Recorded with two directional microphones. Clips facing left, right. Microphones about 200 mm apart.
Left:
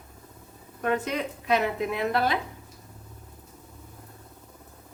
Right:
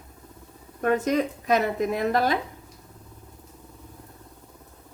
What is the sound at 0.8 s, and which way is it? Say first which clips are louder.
Speech: right 5 dB; 45° right (ahead or behind).